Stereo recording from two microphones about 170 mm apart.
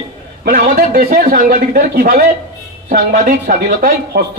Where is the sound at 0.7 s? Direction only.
60° right (ahead or behind).